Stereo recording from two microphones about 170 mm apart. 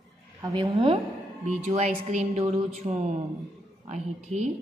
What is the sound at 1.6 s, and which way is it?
A woman's voice, 40° right (ahead or behind).